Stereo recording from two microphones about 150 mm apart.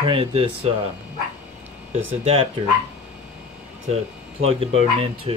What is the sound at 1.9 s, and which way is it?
Speech, 40° right (ahead or behind).